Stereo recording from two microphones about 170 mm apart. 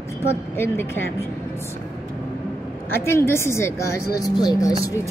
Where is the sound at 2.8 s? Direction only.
15° left (ahead or behind).